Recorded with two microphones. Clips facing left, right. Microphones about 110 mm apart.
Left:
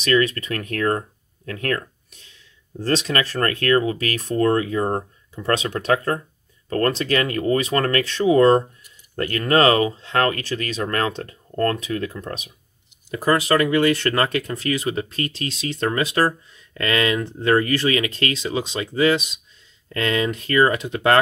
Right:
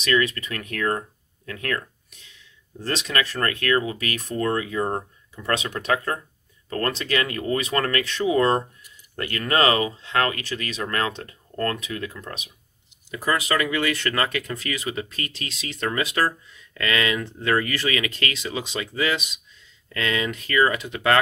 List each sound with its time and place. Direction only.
0.0 s speech: 40° left (ahead or behind)
2.8 s speech: 40° left (ahead or behind)